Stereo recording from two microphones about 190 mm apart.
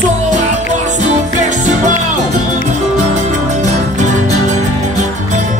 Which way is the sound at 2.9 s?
40° right (ahead or behind).